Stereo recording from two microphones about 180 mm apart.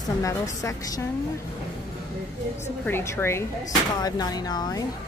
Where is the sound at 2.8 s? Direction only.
15° left (ahead or behind).